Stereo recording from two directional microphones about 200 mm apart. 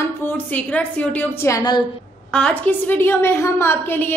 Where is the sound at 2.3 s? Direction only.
5° left (ahead or behind).